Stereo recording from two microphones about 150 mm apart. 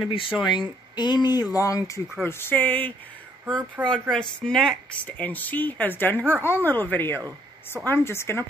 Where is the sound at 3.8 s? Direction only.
10° right (ahead or behind).